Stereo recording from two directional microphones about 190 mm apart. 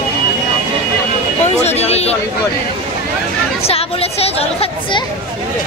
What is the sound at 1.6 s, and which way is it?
Speech, 35° left (ahead or behind).